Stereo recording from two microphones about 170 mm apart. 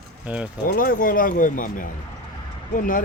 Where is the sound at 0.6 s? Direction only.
55° left (ahead or behind).